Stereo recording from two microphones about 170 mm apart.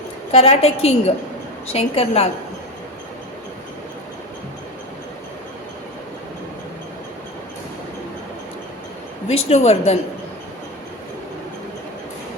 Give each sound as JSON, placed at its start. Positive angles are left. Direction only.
{"t": 0.3, "sound": "a woman's voice", "side_deg": 35}
{"t": 9.3, "sound": "a woman's voice", "side_deg": 40}